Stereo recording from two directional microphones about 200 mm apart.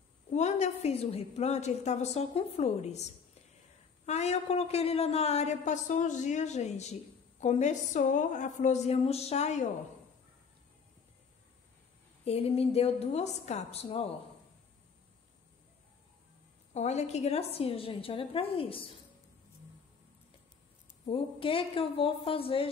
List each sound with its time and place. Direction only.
0.3 s a woman's voice: 35° left (ahead or behind)
12.3 s a woman's voice: 30° left (ahead or behind)
16.7 s a woman's voice: 35° left (ahead or behind)
21.0 s a woman's voice: 25° left (ahead or behind)